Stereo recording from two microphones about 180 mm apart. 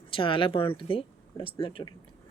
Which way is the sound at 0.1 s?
30° left (ahead or behind).